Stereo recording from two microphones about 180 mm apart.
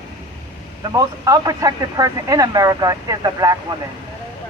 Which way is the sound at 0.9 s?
20° right (ahead or behind).